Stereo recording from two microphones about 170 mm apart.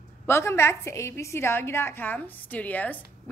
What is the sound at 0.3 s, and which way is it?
A woman's voice, 15° left (ahead or behind).